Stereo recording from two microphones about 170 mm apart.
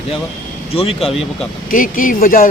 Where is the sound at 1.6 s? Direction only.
55° left (ahead or behind).